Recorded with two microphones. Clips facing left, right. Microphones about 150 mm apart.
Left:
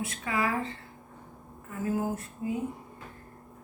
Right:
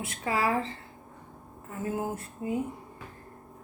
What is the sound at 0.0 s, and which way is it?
Speech, 30° right (ahead or behind).